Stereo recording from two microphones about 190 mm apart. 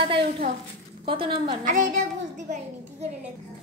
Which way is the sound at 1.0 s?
25° right (ahead or behind).